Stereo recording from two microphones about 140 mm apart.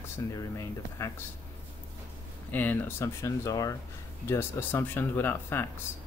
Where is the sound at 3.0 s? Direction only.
20° left (ahead or behind).